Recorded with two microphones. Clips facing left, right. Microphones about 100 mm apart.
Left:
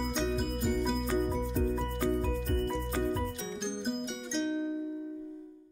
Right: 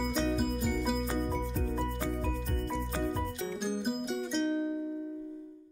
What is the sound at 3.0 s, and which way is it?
Music, 5° right (ahead or behind).